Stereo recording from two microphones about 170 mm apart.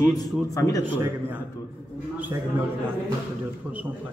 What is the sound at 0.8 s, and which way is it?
Speech, 10° right (ahead or behind).